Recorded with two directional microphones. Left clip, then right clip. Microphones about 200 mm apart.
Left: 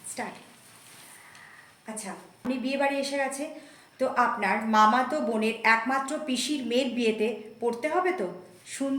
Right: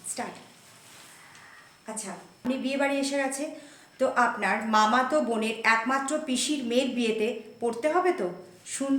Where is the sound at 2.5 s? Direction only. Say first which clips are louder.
Even; 15° right (ahead or behind).